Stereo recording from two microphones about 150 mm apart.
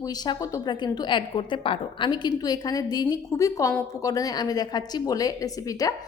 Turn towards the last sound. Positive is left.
turn(degrees=25)  # may be behind; listen again after turning